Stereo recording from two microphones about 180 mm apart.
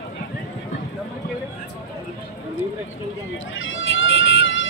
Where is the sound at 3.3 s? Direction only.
90° left.